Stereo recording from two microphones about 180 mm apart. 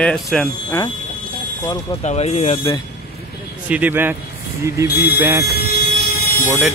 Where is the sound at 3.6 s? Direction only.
10° right (ahead or behind).